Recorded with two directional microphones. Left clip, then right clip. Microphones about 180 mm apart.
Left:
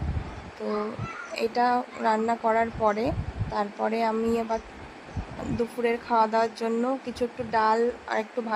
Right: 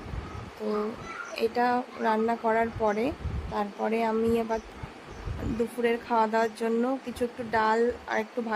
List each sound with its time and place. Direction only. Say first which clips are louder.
0.6 s a child's voice: left 1 dB; centre (ahead or behind)
1.4 s speech: left 2 dB; 15° left (ahead or behind)
5.8 s speech: left 2 dB; 15° left (ahead or behind)